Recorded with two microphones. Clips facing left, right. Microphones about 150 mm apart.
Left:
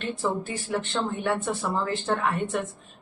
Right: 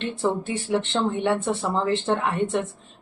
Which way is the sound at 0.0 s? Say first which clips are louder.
Right 3 dB; 25° right (ahead or behind).